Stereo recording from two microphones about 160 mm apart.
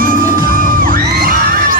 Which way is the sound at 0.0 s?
60° right (ahead or behind).